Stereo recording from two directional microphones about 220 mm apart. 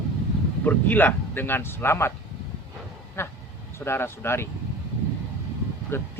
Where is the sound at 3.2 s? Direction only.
10° left (ahead or behind).